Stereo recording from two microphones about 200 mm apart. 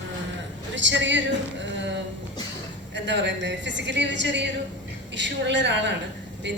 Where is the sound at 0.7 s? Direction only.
65° right (ahead or behind).